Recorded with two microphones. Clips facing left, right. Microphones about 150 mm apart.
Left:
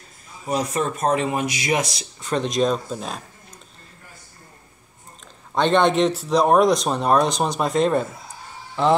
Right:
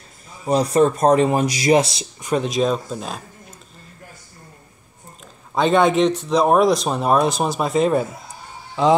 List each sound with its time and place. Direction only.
0.5 s speech: 35° right (ahead or behind)
2.1 s speech: 15° right (ahead or behind)
2.4 s speech: centre (ahead or behind)
5.5 s speech: 5° right (ahead or behind)